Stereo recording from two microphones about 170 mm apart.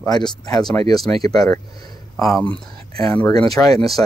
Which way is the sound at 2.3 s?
5° left (ahead or behind).